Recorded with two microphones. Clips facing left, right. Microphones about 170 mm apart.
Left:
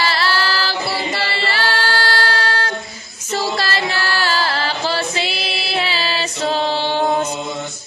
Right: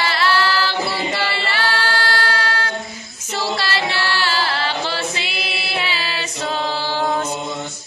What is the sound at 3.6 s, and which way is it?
A capella, 45° left (ahead or behind).